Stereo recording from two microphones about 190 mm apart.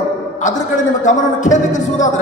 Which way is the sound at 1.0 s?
40° left (ahead or behind).